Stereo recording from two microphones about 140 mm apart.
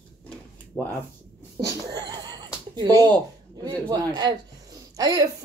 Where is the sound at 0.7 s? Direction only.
10° left (ahead or behind).